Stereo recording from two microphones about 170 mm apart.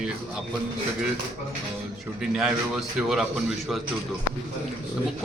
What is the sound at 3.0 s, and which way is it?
Mantra, centre (ahead or behind).